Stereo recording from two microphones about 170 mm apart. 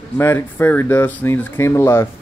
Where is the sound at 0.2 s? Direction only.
15° left (ahead or behind).